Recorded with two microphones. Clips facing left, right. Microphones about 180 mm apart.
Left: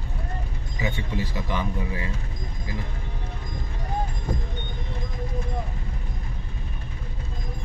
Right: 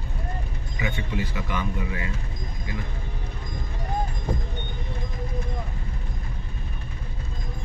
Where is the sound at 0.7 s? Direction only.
35° left (ahead or behind).